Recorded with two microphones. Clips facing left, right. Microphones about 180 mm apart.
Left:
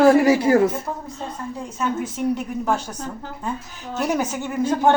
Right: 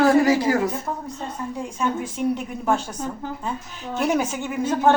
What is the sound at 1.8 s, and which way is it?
Speech, 5° left (ahead or behind).